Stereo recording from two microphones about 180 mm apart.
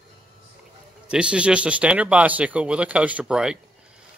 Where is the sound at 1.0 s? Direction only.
5° right (ahead or behind).